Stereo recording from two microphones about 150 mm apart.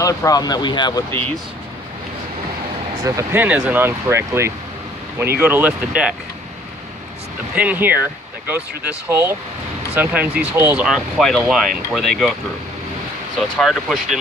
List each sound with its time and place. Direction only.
0.0 s speech: 25° left (ahead or behind)
3.0 s speech: 25° right (ahead or behind)
3.3 s speech: 10° right (ahead or behind)
7.5 s speech: 10° right (ahead or behind)
10.9 s speech: centre (ahead or behind)
13.6 s speech: centre (ahead or behind)